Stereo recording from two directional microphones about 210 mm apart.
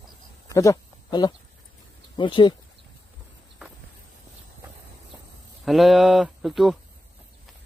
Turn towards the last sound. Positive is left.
turn(degrees=0)  # may be behind; listen again after turning